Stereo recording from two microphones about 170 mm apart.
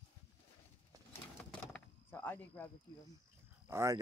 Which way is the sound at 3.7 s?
15° right (ahead or behind).